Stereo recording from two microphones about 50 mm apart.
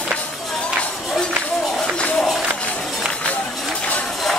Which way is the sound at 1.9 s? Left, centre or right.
Centre.